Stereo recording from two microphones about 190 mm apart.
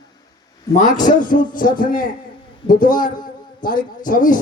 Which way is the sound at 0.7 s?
40° left (ahead or behind).